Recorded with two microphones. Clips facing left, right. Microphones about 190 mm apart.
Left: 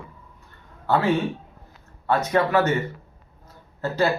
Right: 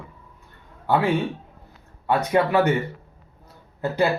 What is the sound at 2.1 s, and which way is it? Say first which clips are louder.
Speech: right 1 dB; 15° right (ahead or behind).